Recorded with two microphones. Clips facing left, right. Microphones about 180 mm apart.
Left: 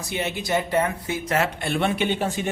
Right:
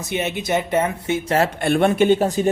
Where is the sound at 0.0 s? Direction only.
20° right (ahead or behind).